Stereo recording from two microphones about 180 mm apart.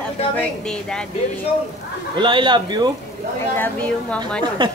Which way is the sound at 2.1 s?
25° right (ahead or behind).